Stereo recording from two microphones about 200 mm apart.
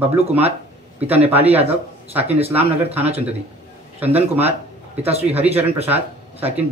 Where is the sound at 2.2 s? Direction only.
30° right (ahead or behind).